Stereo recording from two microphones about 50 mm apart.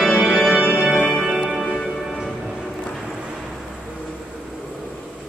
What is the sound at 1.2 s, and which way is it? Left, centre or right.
Music, centre.